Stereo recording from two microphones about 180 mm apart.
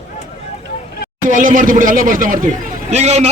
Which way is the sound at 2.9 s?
35° right (ahead or behind).